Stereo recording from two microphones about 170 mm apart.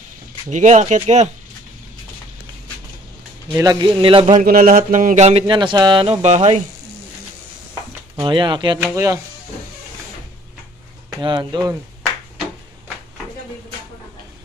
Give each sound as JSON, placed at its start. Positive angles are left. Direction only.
{"t": 0.5, "sound": "speech", "side_deg": -45}
{"t": 3.5, "sound": "speech", "side_deg": -25}
{"t": 4.4, "sound": "a sound", "side_deg": -55}
{"t": 8.2, "sound": "speech", "side_deg": -30}
{"t": 8.7, "sound": "speech", "side_deg": -15}
{"t": 11.1, "sound": "speech", "side_deg": -25}